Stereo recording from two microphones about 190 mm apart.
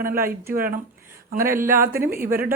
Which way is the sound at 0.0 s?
50° right (ahead or behind).